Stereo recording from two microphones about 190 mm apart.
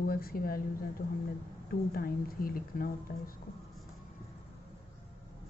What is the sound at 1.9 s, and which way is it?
Speech, 50° left (ahead or behind).